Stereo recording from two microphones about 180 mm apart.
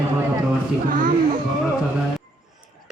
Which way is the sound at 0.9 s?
50° right (ahead or behind).